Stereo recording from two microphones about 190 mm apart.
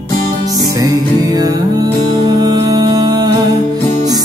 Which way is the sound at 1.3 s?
20° right (ahead or behind).